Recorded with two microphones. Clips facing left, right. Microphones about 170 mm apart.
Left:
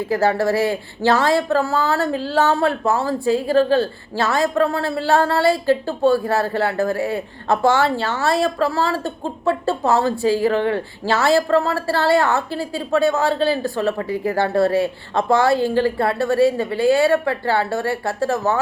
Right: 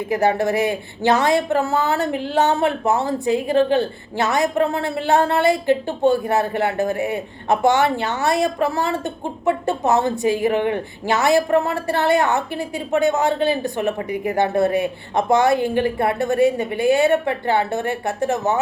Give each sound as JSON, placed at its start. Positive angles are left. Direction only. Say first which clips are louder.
{"t": 0.1, "sound": "a woman's voice", "louder": "even", "side_deg": -20}